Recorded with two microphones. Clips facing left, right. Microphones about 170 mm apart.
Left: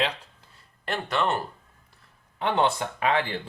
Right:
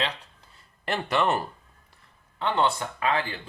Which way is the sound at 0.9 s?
5° right (ahead or behind).